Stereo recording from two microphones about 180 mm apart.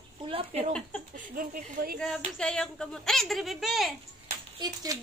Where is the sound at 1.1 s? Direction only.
50° right (ahead or behind).